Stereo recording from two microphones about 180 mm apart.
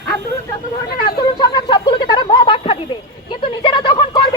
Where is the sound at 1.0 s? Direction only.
25° left (ahead or behind).